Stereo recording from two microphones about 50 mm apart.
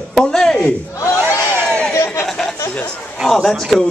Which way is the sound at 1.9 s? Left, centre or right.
Left.